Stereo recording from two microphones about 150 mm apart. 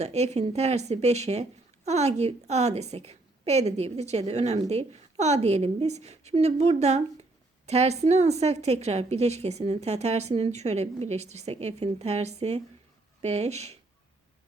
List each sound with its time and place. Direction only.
0.0 s speech: 45° right (ahead or behind)